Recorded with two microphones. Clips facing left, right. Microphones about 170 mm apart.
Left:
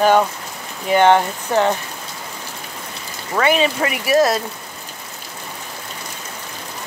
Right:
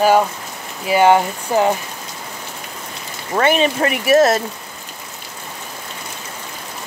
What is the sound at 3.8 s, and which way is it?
Speech, 35° right (ahead or behind).